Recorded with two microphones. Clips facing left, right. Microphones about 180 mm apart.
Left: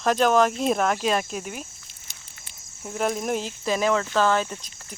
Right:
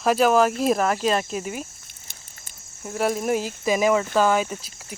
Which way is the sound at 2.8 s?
5° right (ahead or behind).